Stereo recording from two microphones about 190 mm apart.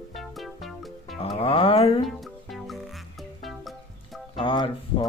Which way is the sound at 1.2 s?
30° left (ahead or behind).